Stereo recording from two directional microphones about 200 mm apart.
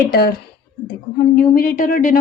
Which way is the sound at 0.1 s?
50° left (ahead or behind).